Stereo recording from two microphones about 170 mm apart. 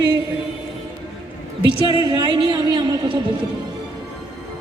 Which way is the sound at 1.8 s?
30° left (ahead or behind).